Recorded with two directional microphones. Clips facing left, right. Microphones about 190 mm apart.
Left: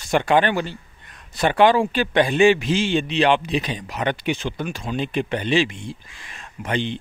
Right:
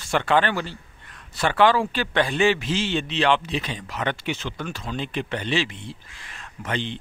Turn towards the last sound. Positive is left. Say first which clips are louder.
# left 4 dB
turn(degrees=15)  # may be behind; listen again after turning